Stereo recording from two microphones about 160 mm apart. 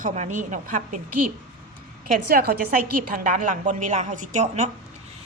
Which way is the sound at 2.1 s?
70° right (ahead or behind).